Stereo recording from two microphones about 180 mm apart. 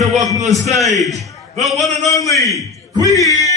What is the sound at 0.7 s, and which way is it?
A man's voice, centre (ahead or behind).